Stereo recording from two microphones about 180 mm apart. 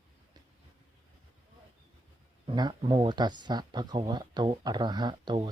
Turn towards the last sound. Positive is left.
turn(degrees=-25)  # may be behind; listen again after turning